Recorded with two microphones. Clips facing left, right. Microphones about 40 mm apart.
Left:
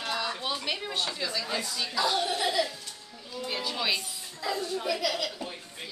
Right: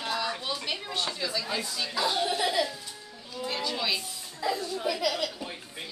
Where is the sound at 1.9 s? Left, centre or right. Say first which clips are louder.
Even; centre.